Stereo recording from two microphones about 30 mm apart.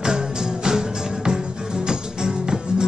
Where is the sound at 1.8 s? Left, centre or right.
Right.